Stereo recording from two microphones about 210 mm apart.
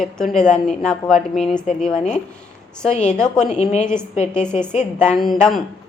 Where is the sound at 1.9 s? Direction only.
35° left (ahead or behind).